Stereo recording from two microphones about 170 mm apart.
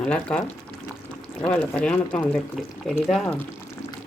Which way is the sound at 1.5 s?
5° left (ahead or behind).